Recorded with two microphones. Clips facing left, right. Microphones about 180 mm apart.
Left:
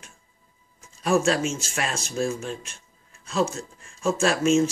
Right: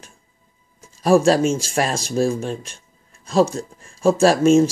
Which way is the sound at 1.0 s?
35° right (ahead or behind).